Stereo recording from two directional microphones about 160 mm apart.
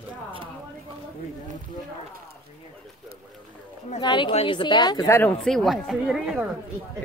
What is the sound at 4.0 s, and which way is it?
A woman's voice, 30° left (ahead or behind).